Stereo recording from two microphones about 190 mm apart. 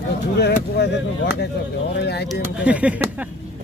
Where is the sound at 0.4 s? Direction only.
60° left (ahead or behind).